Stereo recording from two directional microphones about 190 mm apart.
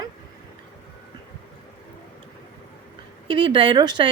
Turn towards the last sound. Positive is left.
turn(degrees=-25)  # may be behind; listen again after turning